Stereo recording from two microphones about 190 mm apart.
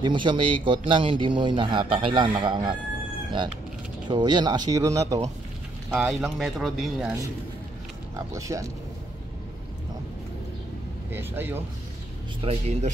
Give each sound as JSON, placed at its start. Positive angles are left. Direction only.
{"t": 0.0, "sound": "speech", "side_deg": -25}
{"t": 4.1, "sound": "speech", "side_deg": -25}
{"t": 5.9, "sound": "speech", "side_deg": -5}
{"t": 8.4, "sound": "speech", "side_deg": -15}
{"t": 11.1, "sound": "speech", "side_deg": -10}
{"t": 12.4, "sound": "a man's voice", "side_deg": -35}